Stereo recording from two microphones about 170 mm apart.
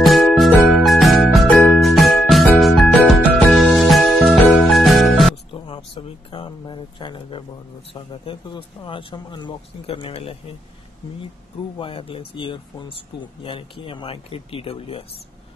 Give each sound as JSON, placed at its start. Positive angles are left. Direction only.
{"t": 0.0, "sound": "music", "side_deg": 0}
{"t": 5.5, "sound": "a sound", "side_deg": 30}
{"t": 7.9, "sound": "speech", "side_deg": 30}
{"t": 11.8, "sound": "speech", "side_deg": 30}